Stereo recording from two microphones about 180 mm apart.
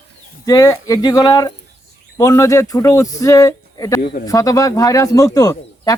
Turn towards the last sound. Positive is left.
turn(degrees=20)  # may be behind; listen again after turning